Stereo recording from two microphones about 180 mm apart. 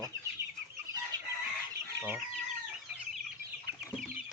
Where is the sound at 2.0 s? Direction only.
10° right (ahead or behind).